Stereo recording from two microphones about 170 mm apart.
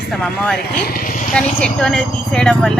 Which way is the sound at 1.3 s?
5° left (ahead or behind).